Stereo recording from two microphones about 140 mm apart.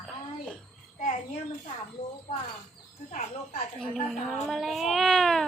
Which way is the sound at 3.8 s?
Centre (ahead or behind).